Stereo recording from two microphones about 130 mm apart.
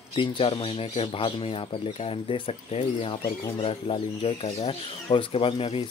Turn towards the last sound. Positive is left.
turn(degrees=45)  # may be behind; listen again after turning